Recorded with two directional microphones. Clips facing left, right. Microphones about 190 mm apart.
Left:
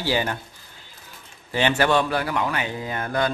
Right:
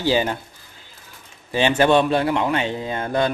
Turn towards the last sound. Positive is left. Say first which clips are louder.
# right 3 dB
turn(degrees=-25)  # may be behind; listen again after turning